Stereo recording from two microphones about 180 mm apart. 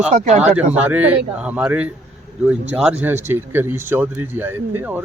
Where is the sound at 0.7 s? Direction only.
10° right (ahead or behind).